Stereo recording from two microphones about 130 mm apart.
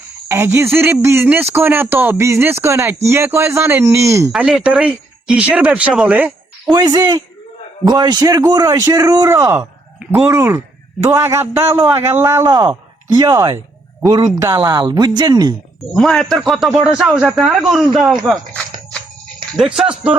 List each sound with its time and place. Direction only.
0.3 s speech: 20° right (ahead or behind)
4.3 s speech: 5° right (ahead or behind)
6.7 s speech: 30° right (ahead or behind)
9.6 s a sound: 10° right (ahead or behind)
10.2 s speech: 20° right (ahead or behind)
12.5 s speech: 30° right (ahead or behind)
15.9 s speech: 5° left (ahead or behind)
19.5 s speech: 5° right (ahead or behind)